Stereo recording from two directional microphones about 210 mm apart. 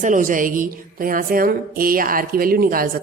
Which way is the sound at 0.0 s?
40° right (ahead or behind).